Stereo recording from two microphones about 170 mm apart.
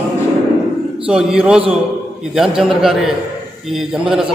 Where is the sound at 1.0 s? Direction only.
5° right (ahead or behind).